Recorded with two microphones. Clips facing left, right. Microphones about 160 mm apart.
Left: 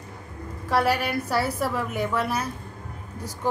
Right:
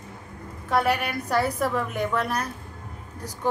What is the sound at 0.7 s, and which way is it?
A woman's voice, centre (ahead or behind).